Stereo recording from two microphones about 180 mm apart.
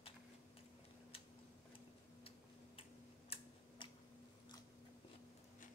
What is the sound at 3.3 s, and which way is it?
Tick-tock, 25° left (ahead or behind).